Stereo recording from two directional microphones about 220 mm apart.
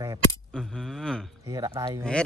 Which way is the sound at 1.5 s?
20° right (ahead or behind).